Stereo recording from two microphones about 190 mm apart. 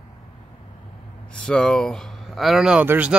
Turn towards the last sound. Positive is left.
turn(degrees=-10)  # may be behind; listen again after turning